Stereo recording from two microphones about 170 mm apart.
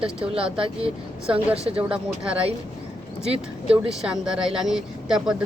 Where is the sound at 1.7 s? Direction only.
5° right (ahead or behind).